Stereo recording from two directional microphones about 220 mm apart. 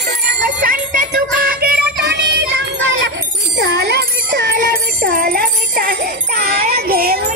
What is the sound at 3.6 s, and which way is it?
Music, 45° right (ahead or behind).